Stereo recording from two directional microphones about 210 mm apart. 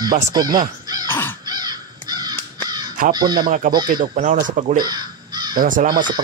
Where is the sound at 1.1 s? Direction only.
10° left (ahead or behind).